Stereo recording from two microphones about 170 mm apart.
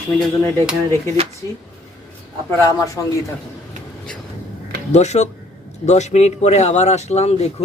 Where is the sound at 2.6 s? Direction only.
20° left (ahead or behind).